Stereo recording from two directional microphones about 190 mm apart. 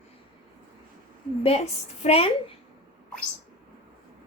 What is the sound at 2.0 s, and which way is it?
Speech, 30° left (ahead or behind).